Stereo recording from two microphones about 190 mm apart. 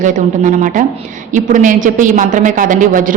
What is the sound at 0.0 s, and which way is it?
A woman's voice, 45° right (ahead or behind).